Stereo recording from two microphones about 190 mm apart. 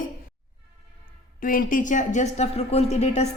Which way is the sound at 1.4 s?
45° left (ahead or behind).